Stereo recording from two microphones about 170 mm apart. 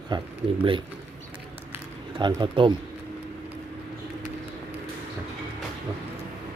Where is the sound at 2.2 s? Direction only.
25° right (ahead or behind).